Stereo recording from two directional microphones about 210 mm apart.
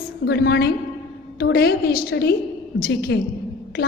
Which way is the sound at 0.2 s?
50° left (ahead or behind).